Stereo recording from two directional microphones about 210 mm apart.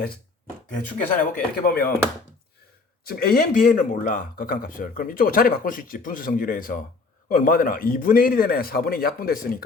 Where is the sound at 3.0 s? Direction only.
45° left (ahead or behind).